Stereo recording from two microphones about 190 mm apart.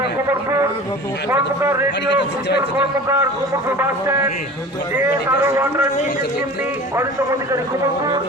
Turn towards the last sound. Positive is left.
turn(degrees=-15)  # may be behind; listen again after turning